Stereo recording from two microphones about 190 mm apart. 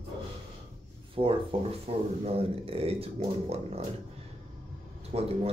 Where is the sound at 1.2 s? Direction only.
30° right (ahead or behind).